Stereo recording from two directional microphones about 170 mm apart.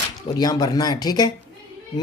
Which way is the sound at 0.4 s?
25° left (ahead or behind).